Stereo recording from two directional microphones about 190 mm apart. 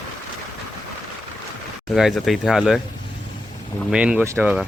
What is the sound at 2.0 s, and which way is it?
Speech, centre (ahead or behind).